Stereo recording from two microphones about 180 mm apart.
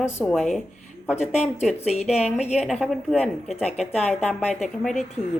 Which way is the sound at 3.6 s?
35° left (ahead or behind).